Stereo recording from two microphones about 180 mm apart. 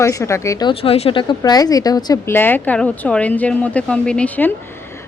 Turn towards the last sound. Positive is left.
turn(degrees=10)  # may be behind; listen again after turning